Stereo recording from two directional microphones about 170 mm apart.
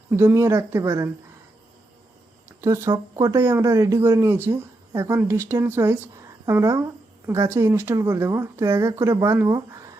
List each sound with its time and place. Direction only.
0.1 s speech: 15° right (ahead or behind)
2.5 s speech: 15° right (ahead or behind)